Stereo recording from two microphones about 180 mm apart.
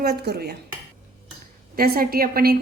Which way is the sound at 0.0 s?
60° right (ahead or behind).